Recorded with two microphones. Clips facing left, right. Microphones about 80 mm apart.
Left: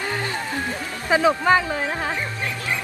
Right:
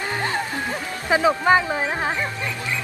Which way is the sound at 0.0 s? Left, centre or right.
Right.